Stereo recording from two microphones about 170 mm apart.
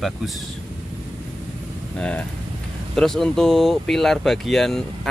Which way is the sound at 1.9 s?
5° left (ahead or behind).